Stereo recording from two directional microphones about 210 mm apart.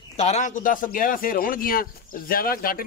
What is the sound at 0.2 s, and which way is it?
A man's voice, 35° left (ahead or behind).